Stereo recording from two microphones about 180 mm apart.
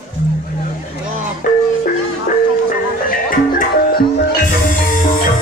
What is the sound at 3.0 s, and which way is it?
Music, 50° left (ahead or behind).